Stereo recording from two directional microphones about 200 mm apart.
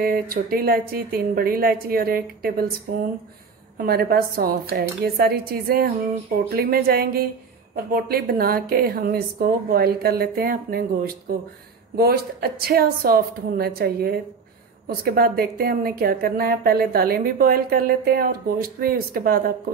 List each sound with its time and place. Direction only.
0.0 s a woman's voice: 45° right (ahead or behind)
3.7 s a woman's voice: 50° right (ahead or behind)